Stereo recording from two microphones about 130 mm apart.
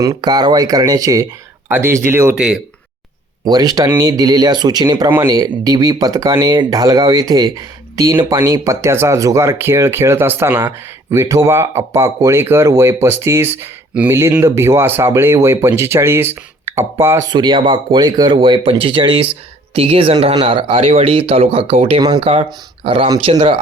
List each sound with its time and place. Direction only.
0.0 s speech: 30° right (ahead or behind)
3.4 s speech: 30° right (ahead or behind)